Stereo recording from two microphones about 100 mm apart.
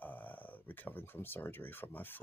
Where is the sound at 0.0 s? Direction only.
15° left (ahead or behind).